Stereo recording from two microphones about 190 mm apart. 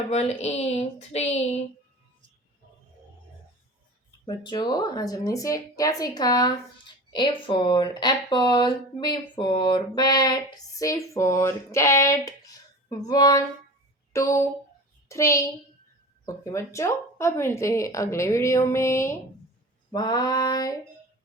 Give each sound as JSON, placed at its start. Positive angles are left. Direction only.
{"t": 0.1, "sound": "a woman's voice", "side_deg": 35}
{"t": 4.3, "sound": "a woman's voice", "side_deg": 20}